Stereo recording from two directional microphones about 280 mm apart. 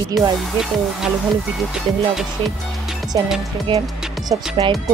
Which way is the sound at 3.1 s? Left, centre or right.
Centre.